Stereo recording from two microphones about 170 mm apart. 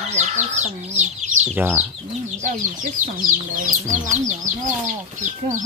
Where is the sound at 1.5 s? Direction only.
10° right (ahead or behind).